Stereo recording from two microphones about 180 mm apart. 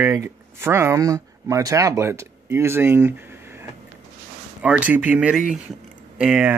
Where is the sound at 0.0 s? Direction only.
15° right (ahead or behind).